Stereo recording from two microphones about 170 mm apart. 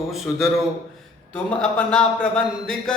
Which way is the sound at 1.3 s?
5° left (ahead or behind).